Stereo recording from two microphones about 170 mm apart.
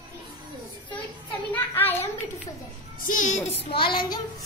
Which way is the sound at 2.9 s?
45° left (ahead or behind).